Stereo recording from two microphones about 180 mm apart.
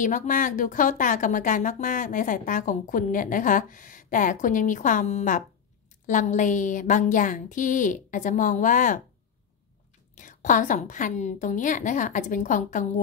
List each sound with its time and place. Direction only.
0.0 s speech: 45° left (ahead or behind)
10.1 s speech: 45° left (ahead or behind)